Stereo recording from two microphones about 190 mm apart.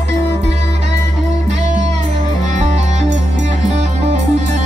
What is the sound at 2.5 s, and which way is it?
Music, 35° right (ahead or behind).